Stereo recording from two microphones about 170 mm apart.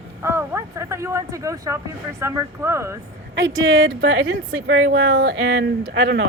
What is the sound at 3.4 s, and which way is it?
A woman's voice, 90° right.